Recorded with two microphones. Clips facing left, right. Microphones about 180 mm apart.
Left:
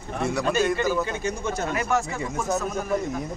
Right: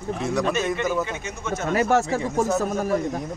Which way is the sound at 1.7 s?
35° right (ahead or behind).